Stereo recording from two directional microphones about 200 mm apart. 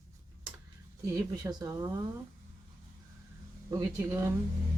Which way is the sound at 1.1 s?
15° right (ahead or behind).